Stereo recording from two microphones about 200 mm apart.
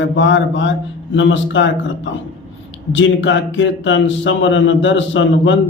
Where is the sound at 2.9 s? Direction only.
70° left (ahead or behind).